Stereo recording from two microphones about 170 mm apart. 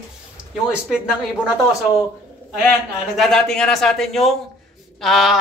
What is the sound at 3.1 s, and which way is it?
Speech, centre (ahead or behind).